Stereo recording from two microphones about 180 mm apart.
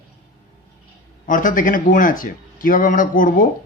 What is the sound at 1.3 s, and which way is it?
Speech, 50° left (ahead or behind).